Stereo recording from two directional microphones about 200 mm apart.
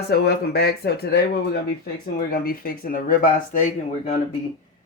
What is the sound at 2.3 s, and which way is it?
Speech, 45° left (ahead or behind).